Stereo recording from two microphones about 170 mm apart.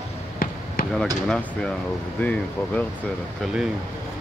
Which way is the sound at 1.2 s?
5° left (ahead or behind).